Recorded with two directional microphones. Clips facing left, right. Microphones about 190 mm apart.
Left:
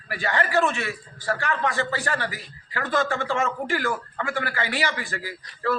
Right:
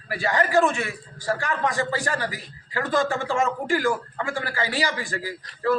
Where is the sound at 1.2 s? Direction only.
15° right (ahead or behind).